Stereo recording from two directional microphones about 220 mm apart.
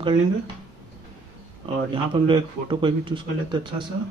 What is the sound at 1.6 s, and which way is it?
Speech, 20° right (ahead or behind).